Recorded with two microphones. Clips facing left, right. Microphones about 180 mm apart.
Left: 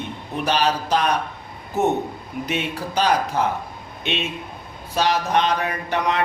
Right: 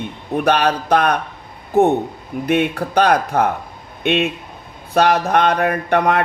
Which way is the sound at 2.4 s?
55° right (ahead or behind).